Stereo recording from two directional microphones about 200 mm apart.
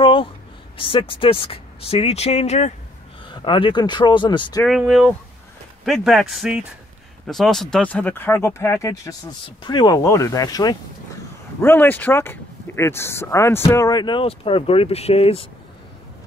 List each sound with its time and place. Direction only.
0.0 s a sound: 25° left (ahead or behind)
0.7 s speech: 25° left (ahead or behind)
4.6 s a man's voice: centre (ahead or behind); by 15.4 s 30° left (ahead or behind)